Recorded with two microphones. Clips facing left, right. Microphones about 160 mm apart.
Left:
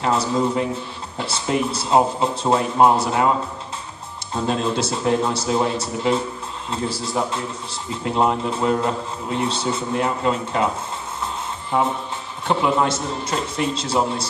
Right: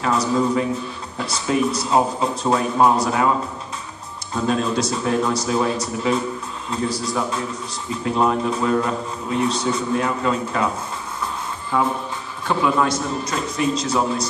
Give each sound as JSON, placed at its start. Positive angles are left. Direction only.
{"t": 0.0, "sound": "a man's voice", "side_deg": 30}
{"t": 4.5, "sound": "a man's voice", "side_deg": 30}
{"t": 11.7, "sound": "a man's voice", "side_deg": 25}